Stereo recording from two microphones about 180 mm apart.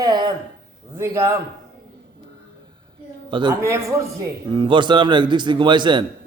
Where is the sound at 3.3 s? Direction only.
25° right (ahead or behind).